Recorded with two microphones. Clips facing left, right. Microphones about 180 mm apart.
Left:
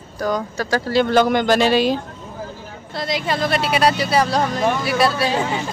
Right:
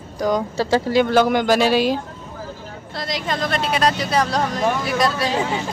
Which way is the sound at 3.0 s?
5° left (ahead or behind).